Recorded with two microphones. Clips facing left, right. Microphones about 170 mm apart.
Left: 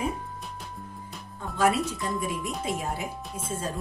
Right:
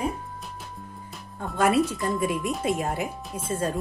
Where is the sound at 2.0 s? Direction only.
Centre (ahead or behind).